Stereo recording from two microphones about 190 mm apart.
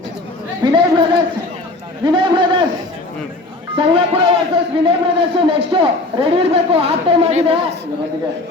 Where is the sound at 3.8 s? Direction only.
30° right (ahead or behind).